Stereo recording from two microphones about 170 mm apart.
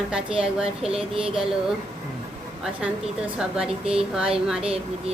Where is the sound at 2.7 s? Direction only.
5° right (ahead or behind).